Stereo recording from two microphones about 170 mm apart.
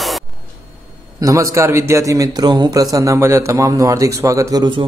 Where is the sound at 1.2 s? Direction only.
20° right (ahead or behind).